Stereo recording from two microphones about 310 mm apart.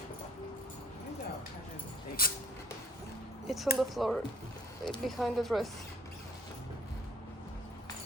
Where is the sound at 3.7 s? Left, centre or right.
Centre.